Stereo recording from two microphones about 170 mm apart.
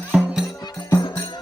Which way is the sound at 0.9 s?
25° left (ahead or behind).